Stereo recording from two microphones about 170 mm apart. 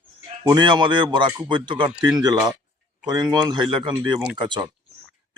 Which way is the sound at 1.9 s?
5° right (ahead or behind).